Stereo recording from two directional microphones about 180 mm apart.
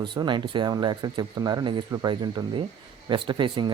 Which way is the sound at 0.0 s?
25° right (ahead or behind).